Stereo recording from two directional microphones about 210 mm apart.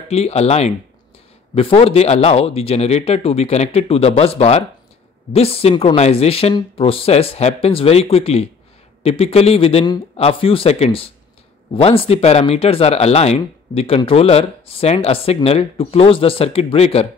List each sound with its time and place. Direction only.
0.1 s speech: 30° left (ahead or behind)